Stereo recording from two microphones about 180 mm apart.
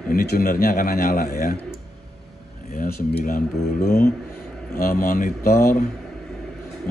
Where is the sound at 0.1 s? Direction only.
55° left (ahead or behind).